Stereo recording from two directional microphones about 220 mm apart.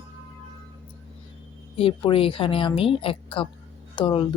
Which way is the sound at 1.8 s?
25° left (ahead or behind).